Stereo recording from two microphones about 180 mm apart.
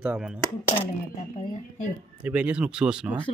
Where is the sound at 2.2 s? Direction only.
5° right (ahead or behind).